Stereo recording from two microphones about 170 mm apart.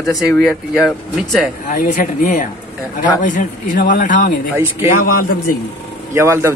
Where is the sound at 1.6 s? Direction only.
50° left (ahead or behind).